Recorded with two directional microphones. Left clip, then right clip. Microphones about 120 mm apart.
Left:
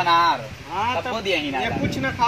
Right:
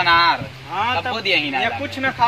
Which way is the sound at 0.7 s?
10° right (ahead or behind).